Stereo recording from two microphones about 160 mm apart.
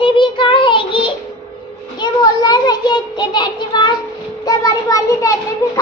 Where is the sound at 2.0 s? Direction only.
25° left (ahead or behind).